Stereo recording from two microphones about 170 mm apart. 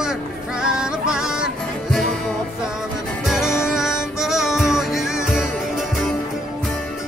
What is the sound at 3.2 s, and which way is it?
Music, centre (ahead or behind).